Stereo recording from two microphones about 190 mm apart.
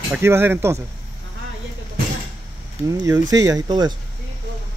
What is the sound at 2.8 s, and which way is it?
Speech, 20° right (ahead or behind).